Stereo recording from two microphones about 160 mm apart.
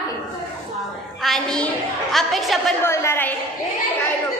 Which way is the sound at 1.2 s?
5° left (ahead or behind).